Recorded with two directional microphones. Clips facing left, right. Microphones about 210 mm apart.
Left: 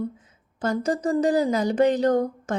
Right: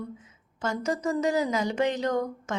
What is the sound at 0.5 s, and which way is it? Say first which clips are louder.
Speech: left 5 dB; 35° left (ahead or behind).